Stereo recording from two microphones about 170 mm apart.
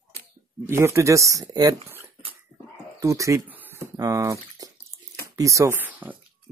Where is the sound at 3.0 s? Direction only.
20° right (ahead or behind).